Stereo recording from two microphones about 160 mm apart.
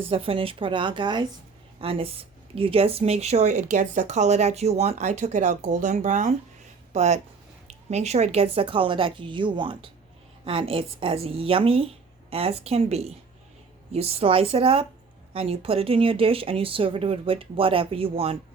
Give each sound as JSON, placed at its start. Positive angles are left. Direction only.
{"t": 0.1, "sound": "speech", "side_deg": -35}